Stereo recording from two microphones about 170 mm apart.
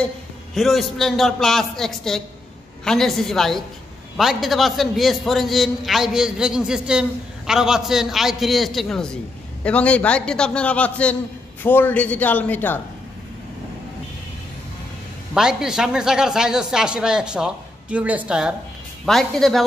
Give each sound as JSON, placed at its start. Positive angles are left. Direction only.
{"t": 0.6, "sound": "a man's voice", "side_deg": 0}
{"t": 15.3, "sound": "a man's voice", "side_deg": -5}